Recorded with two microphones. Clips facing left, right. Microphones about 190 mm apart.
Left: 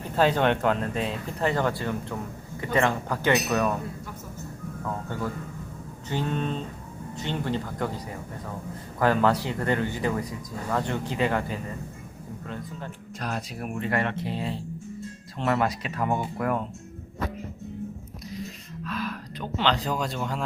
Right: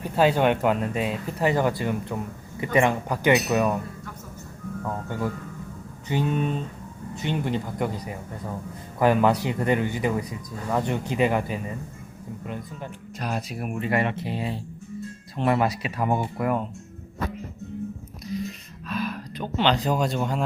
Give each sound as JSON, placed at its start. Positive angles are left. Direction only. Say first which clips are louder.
{"t": 0.2, "sound": "speech", "louder": "right 2 dB", "side_deg": -10}
{"t": 6.1, "sound": "speech", "louder": "right 3 dB", "side_deg": -15}
{"t": 18.9, "sound": "speech", "louder": "right 3 dB", "side_deg": -15}